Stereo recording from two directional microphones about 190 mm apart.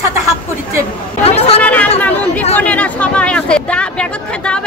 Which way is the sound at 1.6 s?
10° left (ahead or behind).